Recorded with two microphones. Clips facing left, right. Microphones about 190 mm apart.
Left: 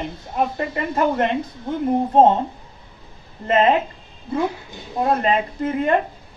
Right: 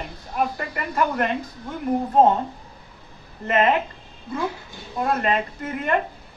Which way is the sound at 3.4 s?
30° left (ahead or behind).